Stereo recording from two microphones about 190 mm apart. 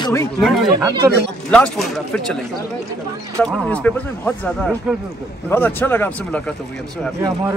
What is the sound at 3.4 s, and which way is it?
Speech, 5° left (ahead or behind).